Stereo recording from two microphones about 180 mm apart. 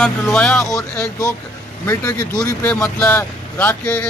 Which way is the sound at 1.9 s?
20° left (ahead or behind).